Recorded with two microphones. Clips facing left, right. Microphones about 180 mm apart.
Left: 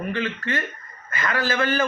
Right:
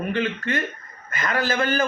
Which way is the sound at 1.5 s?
40° right (ahead or behind).